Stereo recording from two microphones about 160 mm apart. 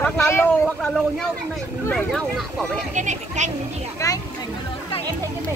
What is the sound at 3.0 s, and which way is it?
Speech, 50° right (ahead or behind).